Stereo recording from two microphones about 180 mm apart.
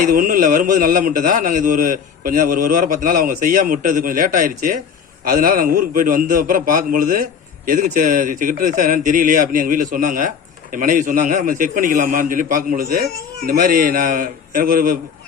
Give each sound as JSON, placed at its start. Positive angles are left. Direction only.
{"t": 0.0, "sound": "a man's voice", "side_deg": -50}